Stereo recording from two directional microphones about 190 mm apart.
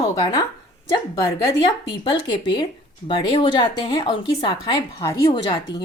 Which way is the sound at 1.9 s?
25° left (ahead or behind).